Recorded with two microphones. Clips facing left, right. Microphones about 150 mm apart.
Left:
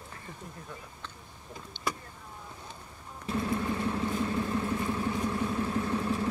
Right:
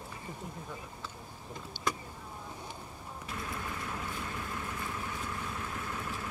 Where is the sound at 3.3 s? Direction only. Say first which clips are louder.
Left 10 dB; 30° left (ahead or behind).